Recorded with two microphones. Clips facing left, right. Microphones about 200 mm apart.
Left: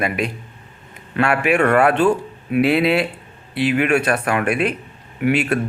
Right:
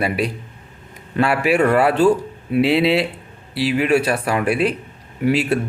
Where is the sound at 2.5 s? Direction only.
25° right (ahead or behind).